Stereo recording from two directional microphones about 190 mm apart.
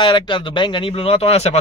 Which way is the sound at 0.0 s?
25° left (ahead or behind).